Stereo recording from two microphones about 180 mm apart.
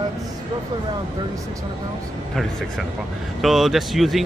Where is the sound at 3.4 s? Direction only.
Centre (ahead or behind).